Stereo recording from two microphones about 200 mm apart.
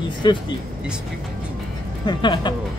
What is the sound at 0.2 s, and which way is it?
Speech, 25° left (ahead or behind).